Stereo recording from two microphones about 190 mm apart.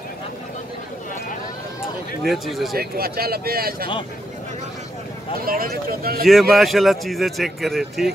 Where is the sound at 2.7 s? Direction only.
50° right (ahead or behind).